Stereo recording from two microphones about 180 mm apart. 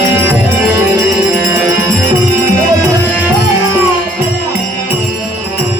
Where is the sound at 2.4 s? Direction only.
20° right (ahead or behind).